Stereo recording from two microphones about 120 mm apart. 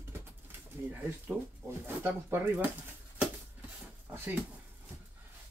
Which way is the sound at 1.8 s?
15° right (ahead or behind).